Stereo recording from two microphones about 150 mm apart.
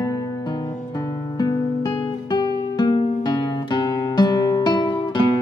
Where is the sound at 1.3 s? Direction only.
25° left (ahead or behind).